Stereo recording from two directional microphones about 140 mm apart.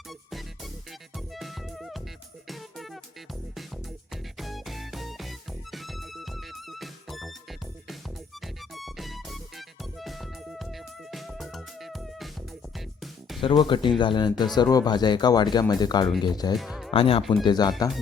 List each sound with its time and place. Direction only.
0.1 s music: centre (ahead or behind)
4.1 s music: centre (ahead or behind)
8.4 s music: centre (ahead or behind)
13.4 s speech: 35° left (ahead or behind)
16.6 s music: centre (ahead or behind)
16.9 s speech: 40° left (ahead or behind)
17.4 s speech: 30° left (ahead or behind)